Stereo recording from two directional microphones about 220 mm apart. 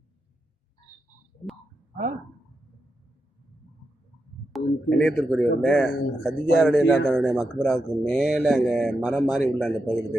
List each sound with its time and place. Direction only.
4.5 s speech: 5° left (ahead or behind)